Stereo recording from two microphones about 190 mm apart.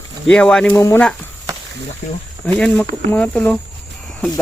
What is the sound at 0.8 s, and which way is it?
Speech, 15° left (ahead or behind).